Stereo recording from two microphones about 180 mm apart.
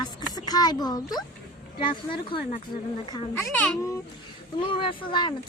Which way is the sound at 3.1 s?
15° left (ahead or behind).